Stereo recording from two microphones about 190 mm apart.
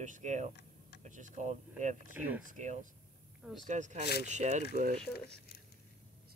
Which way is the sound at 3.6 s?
40° right (ahead or behind).